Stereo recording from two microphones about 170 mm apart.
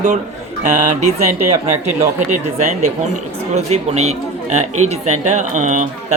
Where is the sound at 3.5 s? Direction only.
40° right (ahead or behind).